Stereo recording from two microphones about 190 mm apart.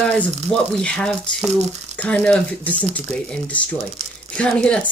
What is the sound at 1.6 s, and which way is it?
Speech, 35° right (ahead or behind).